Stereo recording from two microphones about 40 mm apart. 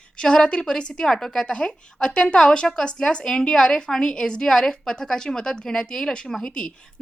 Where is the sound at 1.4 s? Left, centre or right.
Left.